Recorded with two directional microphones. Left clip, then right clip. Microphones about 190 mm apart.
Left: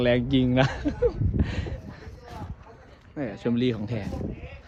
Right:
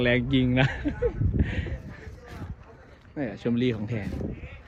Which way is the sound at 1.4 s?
20° left (ahead or behind).